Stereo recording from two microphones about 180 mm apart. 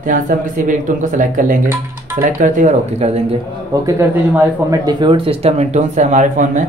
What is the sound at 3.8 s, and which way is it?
Speech, 15° right (ahead or behind).